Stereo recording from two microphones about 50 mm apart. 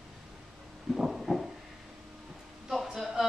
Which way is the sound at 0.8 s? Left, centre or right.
Centre.